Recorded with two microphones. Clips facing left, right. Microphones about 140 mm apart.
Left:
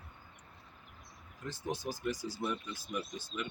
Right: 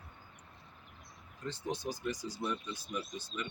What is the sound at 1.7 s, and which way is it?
Speech, 20° right (ahead or behind).